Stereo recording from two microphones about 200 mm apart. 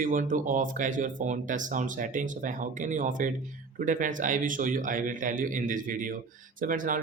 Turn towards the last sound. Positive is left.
turn(degrees=-40)  # may be behind; listen again after turning